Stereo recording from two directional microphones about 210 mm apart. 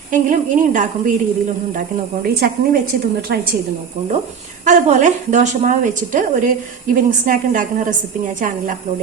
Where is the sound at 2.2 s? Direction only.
50° right (ahead or behind).